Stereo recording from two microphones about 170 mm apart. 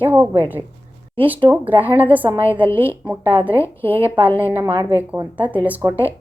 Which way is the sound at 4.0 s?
30° right (ahead or behind).